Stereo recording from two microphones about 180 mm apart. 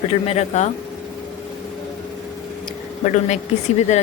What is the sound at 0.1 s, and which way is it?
Speech, 35° left (ahead or behind).